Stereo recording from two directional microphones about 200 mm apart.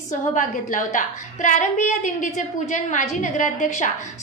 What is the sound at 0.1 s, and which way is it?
A woman's voice, 40° left (ahead or behind).